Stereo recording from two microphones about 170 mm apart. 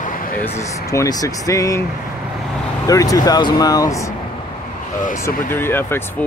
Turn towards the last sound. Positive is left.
turn(degrees=15)  # may be behind; listen again after turning